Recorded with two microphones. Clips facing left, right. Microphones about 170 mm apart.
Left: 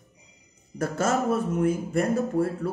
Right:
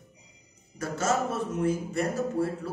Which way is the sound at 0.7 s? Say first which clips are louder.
Left 3 dB; 55° left (ahead or behind).